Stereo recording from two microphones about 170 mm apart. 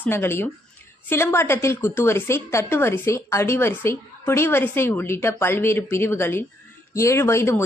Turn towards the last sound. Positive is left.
turn(degrees=15)  # may be behind; listen again after turning